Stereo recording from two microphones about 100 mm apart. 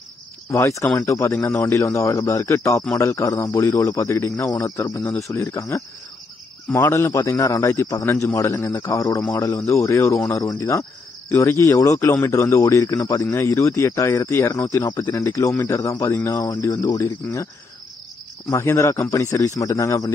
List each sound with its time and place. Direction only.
0.5 s speech: 30° left (ahead or behind)
18.5 s speech: 25° left (ahead or behind)